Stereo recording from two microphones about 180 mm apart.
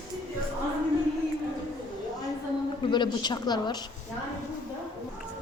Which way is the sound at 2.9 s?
25° left (ahead or behind).